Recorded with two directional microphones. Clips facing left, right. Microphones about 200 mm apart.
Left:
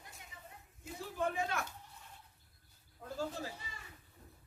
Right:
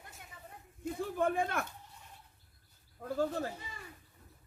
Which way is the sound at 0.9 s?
55° right (ahead or behind).